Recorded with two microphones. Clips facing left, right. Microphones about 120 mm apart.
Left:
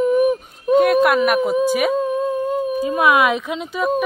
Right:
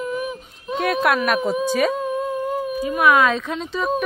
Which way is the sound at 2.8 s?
25° left (ahead or behind).